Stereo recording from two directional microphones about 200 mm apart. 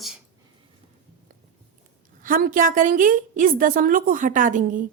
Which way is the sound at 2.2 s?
45° right (ahead or behind).